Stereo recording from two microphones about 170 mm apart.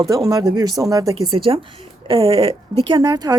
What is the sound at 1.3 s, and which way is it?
A woman's voice, 30° right (ahead or behind).